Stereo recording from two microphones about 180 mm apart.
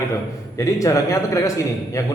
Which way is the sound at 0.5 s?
20° left (ahead or behind).